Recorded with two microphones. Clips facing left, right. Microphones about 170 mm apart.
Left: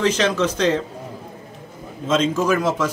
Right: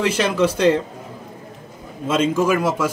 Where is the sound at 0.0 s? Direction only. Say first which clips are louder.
Right 1 dB; 10° right (ahead or behind).